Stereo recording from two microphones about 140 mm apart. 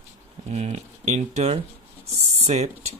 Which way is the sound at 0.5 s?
50° right (ahead or behind).